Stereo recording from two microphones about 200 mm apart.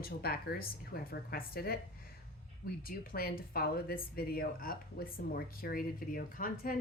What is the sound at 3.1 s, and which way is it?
Speech, 50° left (ahead or behind).